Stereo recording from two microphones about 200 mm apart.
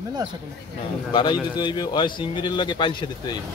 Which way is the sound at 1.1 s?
25° left (ahead or behind).